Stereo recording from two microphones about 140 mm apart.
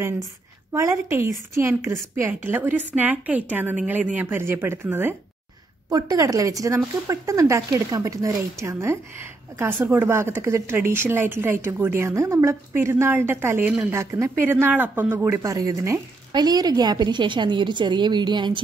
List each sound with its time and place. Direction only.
0.7 s speech: 20° right (ahead or behind)